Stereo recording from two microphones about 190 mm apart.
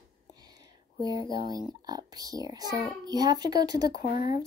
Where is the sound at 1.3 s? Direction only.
20° right (ahead or behind).